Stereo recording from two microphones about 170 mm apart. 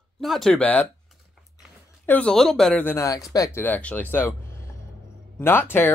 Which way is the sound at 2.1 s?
5° left (ahead or behind).